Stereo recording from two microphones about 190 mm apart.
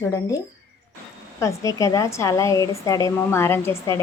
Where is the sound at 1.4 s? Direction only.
15° left (ahead or behind).